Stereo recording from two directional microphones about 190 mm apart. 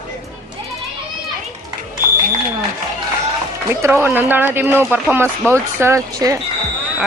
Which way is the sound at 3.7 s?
15° right (ahead or behind).